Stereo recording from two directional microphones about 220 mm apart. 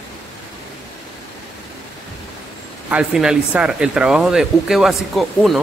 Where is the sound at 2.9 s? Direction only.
5° right (ahead or behind).